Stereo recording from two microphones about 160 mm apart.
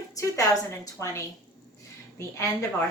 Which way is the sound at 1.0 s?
20° left (ahead or behind).